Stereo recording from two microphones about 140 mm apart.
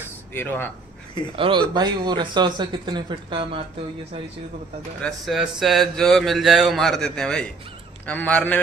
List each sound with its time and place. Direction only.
0.3 s a man's voice: 15° left (ahead or behind)
1.3 s speech: 40° right (ahead or behind)
5.0 s a man's voice: centre (ahead or behind)